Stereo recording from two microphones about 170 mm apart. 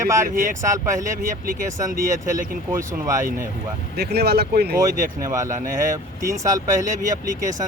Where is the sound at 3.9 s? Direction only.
70° right (ahead or behind).